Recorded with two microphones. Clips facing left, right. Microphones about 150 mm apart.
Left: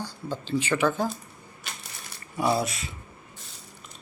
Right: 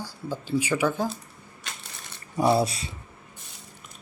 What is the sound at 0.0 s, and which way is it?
Speech, 5° right (ahead or behind).